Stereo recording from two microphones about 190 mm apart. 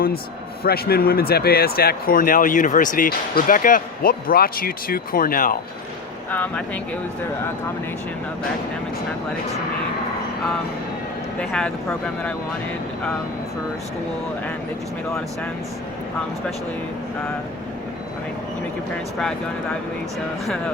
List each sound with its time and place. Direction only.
0.6 s speech: 55° left (ahead or behind)
11.3 s speech: 5° left (ahead or behind)